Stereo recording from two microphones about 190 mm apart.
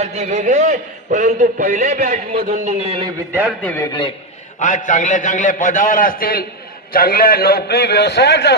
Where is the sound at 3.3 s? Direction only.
10° right (ahead or behind).